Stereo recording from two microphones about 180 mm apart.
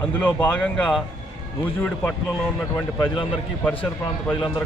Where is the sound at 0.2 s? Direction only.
10° left (ahead or behind).